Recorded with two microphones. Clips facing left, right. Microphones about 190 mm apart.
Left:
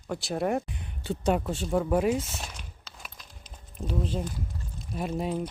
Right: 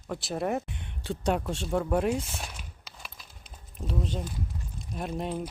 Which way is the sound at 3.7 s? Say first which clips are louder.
Left 2 dB; centre (ahead or behind).